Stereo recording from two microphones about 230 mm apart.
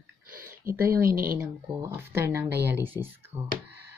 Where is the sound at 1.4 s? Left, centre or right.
Centre.